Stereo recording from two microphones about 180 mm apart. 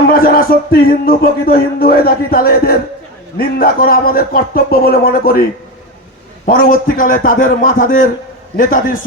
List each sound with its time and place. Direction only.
0.1 s a man's voice: 55° left (ahead or behind)